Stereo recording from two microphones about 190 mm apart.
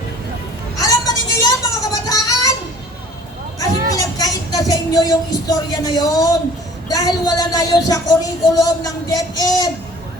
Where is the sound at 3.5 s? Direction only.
20° left (ahead or behind).